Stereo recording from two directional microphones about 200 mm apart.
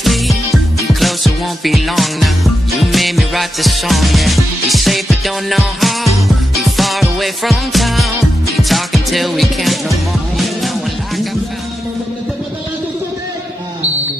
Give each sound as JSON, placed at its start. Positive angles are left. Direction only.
{"t": 0.0, "sound": "music", "side_deg": 0}